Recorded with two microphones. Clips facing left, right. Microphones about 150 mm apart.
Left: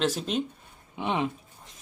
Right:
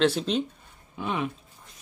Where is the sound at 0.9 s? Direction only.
25° left (ahead or behind).